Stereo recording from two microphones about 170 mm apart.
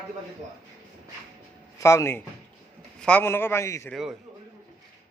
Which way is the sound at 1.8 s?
15° left (ahead or behind).